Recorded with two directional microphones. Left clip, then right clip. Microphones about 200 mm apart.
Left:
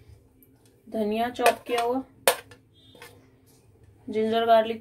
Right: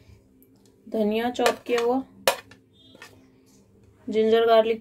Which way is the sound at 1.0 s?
35° right (ahead or behind).